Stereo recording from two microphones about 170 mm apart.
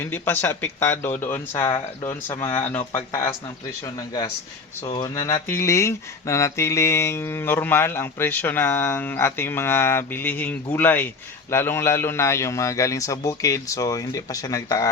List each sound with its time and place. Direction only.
0.0 s a man's voice: 10° left (ahead or behind)